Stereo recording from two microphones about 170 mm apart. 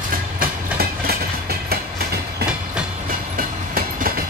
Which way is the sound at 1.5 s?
65° right (ahead or behind).